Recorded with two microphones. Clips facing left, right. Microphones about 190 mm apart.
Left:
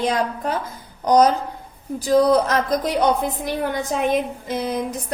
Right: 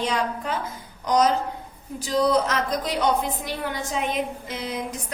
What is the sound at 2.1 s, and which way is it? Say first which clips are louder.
A woman's voice: left 5 dB; 50° left (ahead or behind).